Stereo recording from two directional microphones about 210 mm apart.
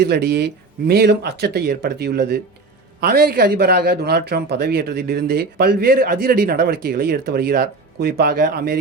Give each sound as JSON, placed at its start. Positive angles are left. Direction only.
{"t": 0.0, "sound": "speech", "side_deg": -50}